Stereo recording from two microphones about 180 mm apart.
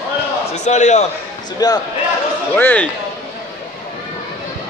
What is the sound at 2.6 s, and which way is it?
Speech, 10° left (ahead or behind).